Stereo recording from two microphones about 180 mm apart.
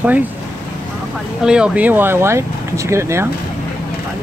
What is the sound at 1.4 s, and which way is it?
Speech, 5° right (ahead or behind).